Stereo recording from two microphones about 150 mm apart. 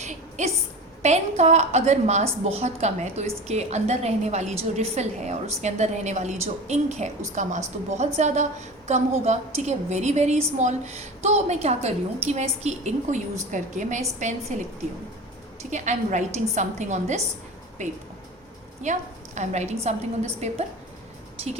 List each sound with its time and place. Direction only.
0.0 s a sound: 50° right (ahead or behind)
1.0 s a woman's voice: 50° right (ahead or behind)
15.7 s a woman's voice: 55° right (ahead or behind)